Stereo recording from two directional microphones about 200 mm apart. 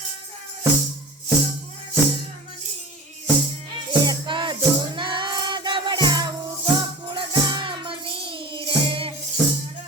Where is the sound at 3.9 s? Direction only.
25° right (ahead or behind).